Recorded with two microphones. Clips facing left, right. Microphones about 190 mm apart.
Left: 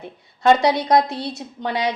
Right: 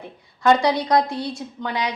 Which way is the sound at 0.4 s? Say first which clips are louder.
Left 2 dB; 25° left (ahead or behind).